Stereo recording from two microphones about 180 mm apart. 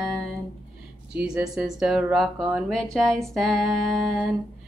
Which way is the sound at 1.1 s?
5° right (ahead or behind).